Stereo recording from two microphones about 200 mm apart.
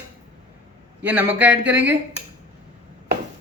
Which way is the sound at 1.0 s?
10° right (ahead or behind).